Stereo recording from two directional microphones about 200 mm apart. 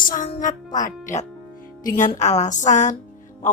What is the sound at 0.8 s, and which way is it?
Speech, 40° left (ahead or behind).